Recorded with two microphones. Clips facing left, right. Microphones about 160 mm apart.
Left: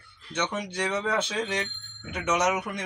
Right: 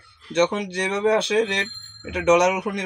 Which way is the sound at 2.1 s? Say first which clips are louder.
Right 9 dB; 75° right (ahead or behind).